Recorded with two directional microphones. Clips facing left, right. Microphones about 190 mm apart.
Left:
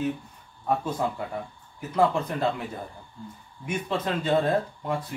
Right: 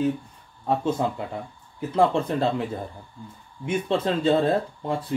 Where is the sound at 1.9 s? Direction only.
30° right (ahead or behind).